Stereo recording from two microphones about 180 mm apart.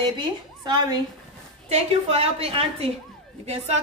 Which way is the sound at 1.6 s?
35° right (ahead or behind).